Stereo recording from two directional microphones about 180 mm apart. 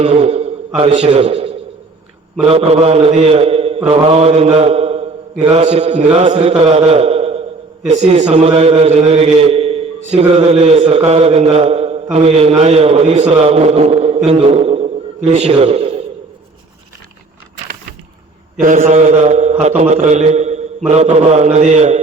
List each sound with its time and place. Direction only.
0.0 s a sound: 35° right (ahead or behind)
0.9 s a man's voice: 35° right (ahead or behind)
3.8 s mantra: 35° right (ahead or behind)
7.9 s a man's voice: 35° right (ahead or behind)
18.6 s a man's voice: 45° right (ahead or behind)